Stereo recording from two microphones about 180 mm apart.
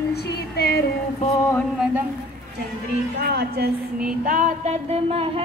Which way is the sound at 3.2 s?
60° right (ahead or behind).